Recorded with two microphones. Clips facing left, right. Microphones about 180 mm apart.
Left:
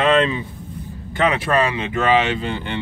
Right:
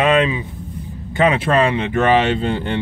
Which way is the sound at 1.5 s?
25° right (ahead or behind).